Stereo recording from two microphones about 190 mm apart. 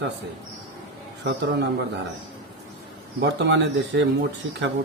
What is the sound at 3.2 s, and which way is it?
Speech, 70° right (ahead or behind).